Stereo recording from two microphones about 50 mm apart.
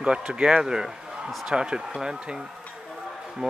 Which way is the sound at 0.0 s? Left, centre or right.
Centre.